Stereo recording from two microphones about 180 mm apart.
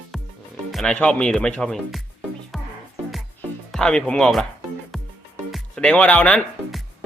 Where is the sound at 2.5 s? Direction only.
Centre (ahead or behind).